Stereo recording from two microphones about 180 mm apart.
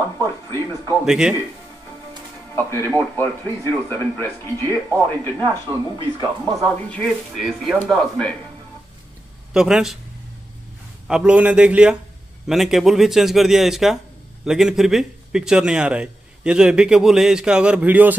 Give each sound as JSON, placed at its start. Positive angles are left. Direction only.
{"t": 0.2, "sound": "television", "side_deg": 15}
{"t": 1.0, "sound": "a man's voice", "side_deg": -5}
{"t": 2.5, "sound": "music", "side_deg": 15}
{"t": 3.0, "sound": "speech", "side_deg": 10}
{"t": 5.4, "sound": "speech", "side_deg": -25}
{"t": 6.6, "sound": "a man's voice", "side_deg": 5}
{"t": 9.5, "sound": "a man's voice", "side_deg": -5}
{"t": 11.1, "sound": "a man's voice", "side_deg": -5}